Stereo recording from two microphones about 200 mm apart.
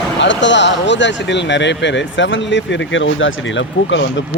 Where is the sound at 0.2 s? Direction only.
65° left (ahead or behind).